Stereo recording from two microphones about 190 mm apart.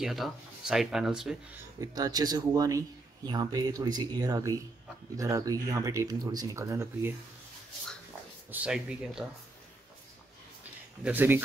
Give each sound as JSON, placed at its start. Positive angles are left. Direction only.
{"t": 0.0, "sound": "speech", "side_deg": 0}
{"t": 1.8, "sound": "speech", "side_deg": -20}
{"t": 8.5, "sound": "speech", "side_deg": -5}
{"t": 10.6, "sound": "a sound", "side_deg": -10}